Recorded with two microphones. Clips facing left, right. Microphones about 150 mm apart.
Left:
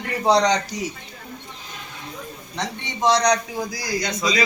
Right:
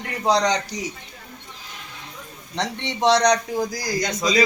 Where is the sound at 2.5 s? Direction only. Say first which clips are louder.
Right 3 dB; 75° right (ahead or behind).